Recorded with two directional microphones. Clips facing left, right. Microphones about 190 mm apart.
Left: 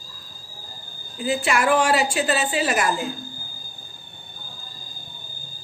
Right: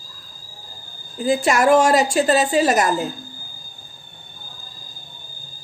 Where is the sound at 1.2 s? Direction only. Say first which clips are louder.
Right 5 dB; 45° right (ahead or behind).